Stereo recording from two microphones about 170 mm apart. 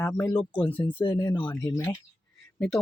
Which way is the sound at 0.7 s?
30° left (ahead or behind).